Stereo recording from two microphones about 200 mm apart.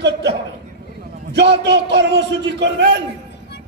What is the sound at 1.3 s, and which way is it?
A man's voice, 60° right (ahead or behind).